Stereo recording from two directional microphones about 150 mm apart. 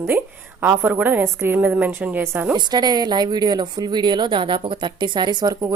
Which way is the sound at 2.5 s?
25° right (ahead or behind).